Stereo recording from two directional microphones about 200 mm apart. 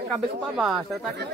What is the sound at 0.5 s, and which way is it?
Speech, centre (ahead or behind).